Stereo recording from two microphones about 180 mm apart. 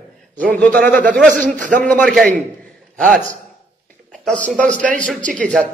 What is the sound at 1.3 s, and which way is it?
Speech, 50° right (ahead or behind).